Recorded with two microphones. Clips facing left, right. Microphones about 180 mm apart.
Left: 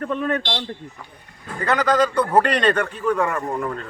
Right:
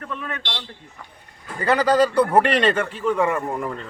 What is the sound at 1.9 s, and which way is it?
Speech, 30° right (ahead or behind).